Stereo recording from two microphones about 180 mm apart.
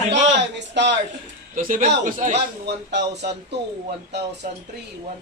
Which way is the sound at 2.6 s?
70° right (ahead or behind).